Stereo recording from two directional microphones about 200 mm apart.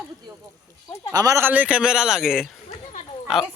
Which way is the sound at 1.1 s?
15° right (ahead or behind).